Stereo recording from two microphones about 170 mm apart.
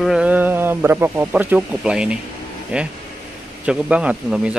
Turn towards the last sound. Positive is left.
turn(degrees=-5)  # may be behind; listen again after turning